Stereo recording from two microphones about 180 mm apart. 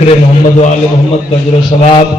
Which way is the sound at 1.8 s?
30° left (ahead or behind).